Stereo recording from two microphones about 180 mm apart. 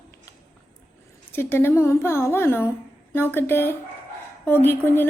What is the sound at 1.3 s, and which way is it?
A woman's voice, 10° left (ahead or behind).